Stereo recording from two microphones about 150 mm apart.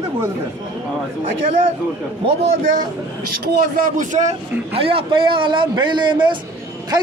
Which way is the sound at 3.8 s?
60° right (ahead or behind).